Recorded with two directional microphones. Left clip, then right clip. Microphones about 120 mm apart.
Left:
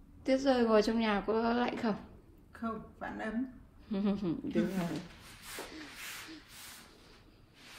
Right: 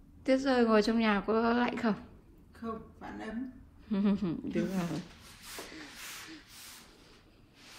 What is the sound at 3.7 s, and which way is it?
Speech, 10° left (ahead or behind).